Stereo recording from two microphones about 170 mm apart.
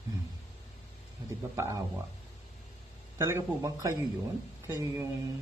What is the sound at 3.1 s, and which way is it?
Speech, 20° right (ahead or behind).